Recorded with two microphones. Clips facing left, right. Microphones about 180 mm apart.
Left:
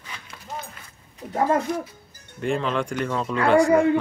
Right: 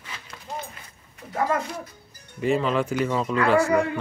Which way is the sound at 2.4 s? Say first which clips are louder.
Right 2 dB; 5° right (ahead or behind).